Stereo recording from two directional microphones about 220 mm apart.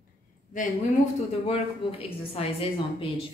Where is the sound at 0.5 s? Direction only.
35° left (ahead or behind).